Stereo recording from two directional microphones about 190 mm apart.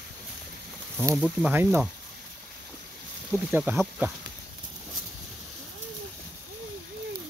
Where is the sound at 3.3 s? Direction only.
10° right (ahead or behind).